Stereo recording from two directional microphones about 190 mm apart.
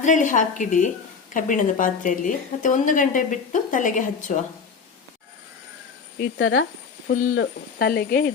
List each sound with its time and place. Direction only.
0.0 s a woman's voice: 40° left (ahead or behind)
6.1 s speech: 65° left (ahead or behind)
7.1 s a woman's voice: 45° left (ahead or behind)
7.3 s speech: 60° left (ahead or behind)